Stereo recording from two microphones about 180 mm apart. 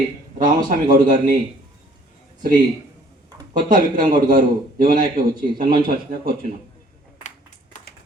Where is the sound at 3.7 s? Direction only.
50° right (ahead or behind).